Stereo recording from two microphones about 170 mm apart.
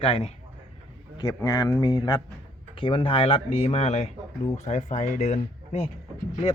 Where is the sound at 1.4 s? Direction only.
20° left (ahead or behind); by 5.9 s 40° left (ahead or behind).